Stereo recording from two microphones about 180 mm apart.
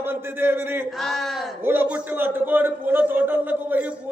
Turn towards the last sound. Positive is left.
turn(degrees=-10)  # may be behind; listen again after turning